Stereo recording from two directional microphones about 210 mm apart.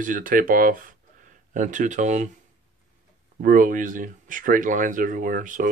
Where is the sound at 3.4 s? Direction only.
40° right (ahead or behind).